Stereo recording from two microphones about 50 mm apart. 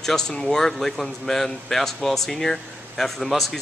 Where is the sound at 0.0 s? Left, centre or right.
Centre.